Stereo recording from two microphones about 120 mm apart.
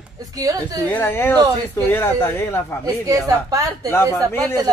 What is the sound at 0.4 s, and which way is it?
Speech, 30° right (ahead or behind).